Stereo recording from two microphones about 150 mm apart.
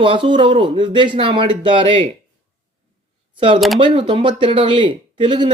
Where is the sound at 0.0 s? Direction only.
35° right (ahead or behind).